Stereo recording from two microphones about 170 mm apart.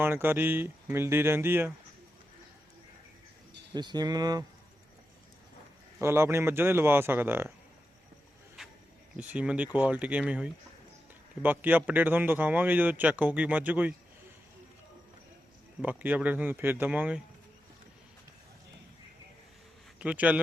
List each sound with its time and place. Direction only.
0.0 s a man's voice: 10° right (ahead or behind)
3.8 s speech: 25° right (ahead or behind)
6.0 s a man's voice: 15° right (ahead or behind)
9.1 s a man's voice: 5° right (ahead or behind)
15.8 s a man's voice: 10° right (ahead or behind)
20.0 s a man's voice: 10° right (ahead or behind)